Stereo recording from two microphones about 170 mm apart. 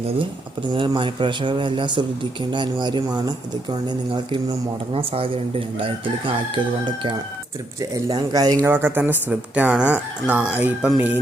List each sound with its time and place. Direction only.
0.7 s speech: 30° right (ahead or behind)
4.9 s chicken: 30° right (ahead or behind)
7.8 s speech: 20° right (ahead or behind)
8.6 s speech: 10° right (ahead or behind)